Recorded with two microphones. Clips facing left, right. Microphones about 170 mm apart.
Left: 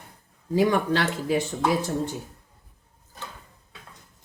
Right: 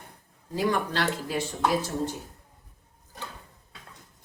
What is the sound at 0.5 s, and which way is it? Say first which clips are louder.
Speech: left 5 dB; 60° left (ahead or behind).